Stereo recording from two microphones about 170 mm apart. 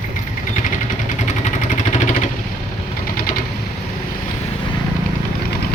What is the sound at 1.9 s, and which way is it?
Vehicle, 45° left (ahead or behind).